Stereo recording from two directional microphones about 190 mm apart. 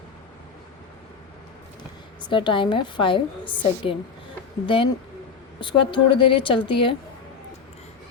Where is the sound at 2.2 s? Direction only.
25° left (ahead or behind).